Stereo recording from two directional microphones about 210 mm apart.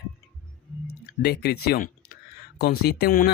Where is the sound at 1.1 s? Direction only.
50° left (ahead or behind).